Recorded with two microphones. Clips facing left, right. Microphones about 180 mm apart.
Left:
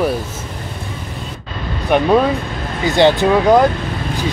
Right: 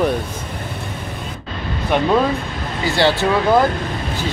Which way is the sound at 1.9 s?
15° left (ahead or behind).